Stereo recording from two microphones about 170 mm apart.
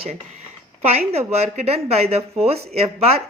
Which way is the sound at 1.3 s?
40° right (ahead or behind).